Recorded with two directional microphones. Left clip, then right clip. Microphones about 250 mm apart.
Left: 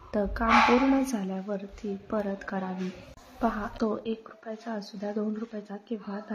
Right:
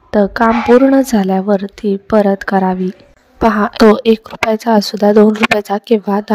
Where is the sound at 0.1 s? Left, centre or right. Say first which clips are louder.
Right 12 dB; right.